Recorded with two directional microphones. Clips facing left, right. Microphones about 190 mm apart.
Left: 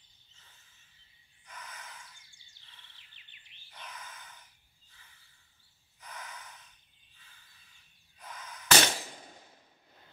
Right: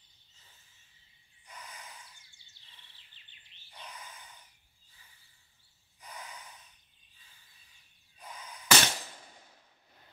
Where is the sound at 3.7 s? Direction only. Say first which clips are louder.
Even; 10° right (ahead or behind).